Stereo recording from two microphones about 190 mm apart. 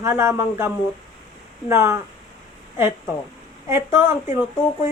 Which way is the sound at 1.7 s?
15° right (ahead or behind).